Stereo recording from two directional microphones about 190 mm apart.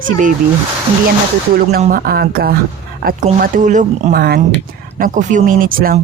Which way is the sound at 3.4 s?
40° right (ahead or behind).